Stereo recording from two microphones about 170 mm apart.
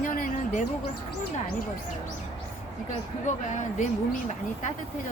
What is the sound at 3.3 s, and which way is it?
Speech, 45° left (ahead or behind).